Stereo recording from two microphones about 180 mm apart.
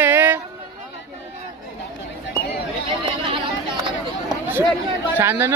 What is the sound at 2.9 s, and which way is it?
Chatter, 25° right (ahead or behind).